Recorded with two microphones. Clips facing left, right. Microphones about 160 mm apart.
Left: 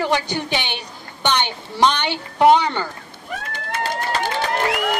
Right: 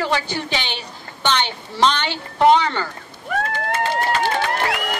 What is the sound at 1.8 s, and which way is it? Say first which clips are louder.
A woman's voice: left 1 dB; 15° left (ahead or behind).